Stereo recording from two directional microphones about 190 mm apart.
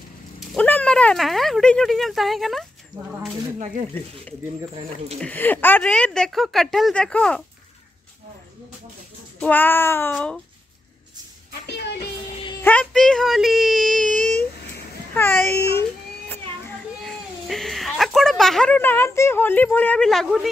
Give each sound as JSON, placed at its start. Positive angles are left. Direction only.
{"t": 0.5, "sound": "speech", "side_deg": 10}
{"t": 3.9, "sound": "a child's voice", "side_deg": 10}
{"t": 4.7, "sound": "speech", "side_deg": -30}
{"t": 5.2, "sound": "speech", "side_deg": 10}
{"t": 9.4, "sound": "a child's voice", "side_deg": 10}
{"t": 11.6, "sound": "music", "side_deg": 60}
{"t": 12.6, "sound": "speech", "side_deg": 5}
{"t": 14.2, "sound": "a sound", "side_deg": 5}
{"t": 15.1, "sound": "a child's voice", "side_deg": 10}